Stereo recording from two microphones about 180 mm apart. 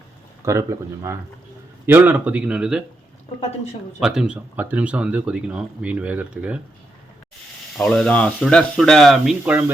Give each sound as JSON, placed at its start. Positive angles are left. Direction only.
{"t": 0.4, "sound": "speech", "side_deg": -15}
{"t": 4.0, "sound": "speech", "side_deg": 0}
{"t": 7.8, "sound": "speech", "side_deg": 5}